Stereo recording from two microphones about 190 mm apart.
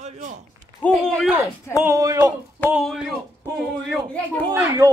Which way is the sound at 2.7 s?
Centre (ahead or behind).